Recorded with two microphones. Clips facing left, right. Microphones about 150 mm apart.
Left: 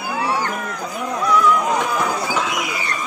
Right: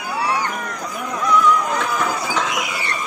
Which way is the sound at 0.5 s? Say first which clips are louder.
Left 1 dB; centre (ahead or behind).